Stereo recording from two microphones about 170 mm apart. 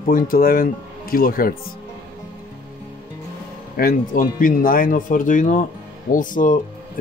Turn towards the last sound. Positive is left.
turn(degrees=50)  # may be behind; listen again after turning